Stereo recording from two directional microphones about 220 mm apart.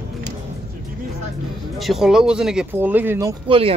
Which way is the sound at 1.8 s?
Centre (ahead or behind).